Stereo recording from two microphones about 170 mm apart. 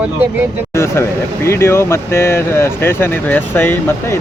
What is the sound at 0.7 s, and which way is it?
Speech, 15° left (ahead or behind).